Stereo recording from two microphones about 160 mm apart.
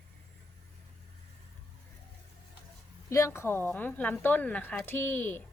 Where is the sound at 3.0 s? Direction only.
20° left (ahead or behind).